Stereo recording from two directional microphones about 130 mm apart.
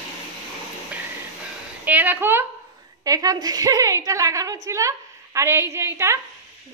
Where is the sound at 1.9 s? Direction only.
15° right (ahead or behind).